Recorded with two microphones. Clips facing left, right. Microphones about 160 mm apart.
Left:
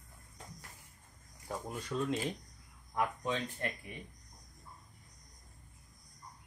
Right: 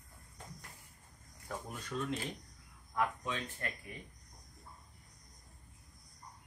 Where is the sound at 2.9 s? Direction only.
25° left (ahead or behind).